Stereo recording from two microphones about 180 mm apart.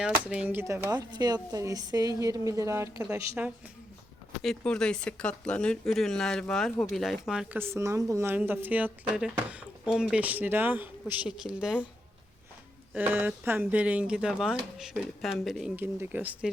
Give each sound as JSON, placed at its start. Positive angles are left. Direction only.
{"t": 0.0, "sound": "speech", "side_deg": -5}
{"t": 4.4, "sound": "speech", "side_deg": 5}
{"t": 12.9, "sound": "speech", "side_deg": -10}